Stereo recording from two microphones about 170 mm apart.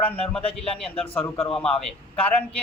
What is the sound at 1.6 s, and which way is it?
Speech, 5° left (ahead or behind).